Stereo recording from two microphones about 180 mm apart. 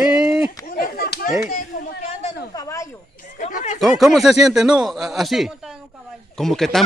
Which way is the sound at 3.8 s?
Centre (ahead or behind).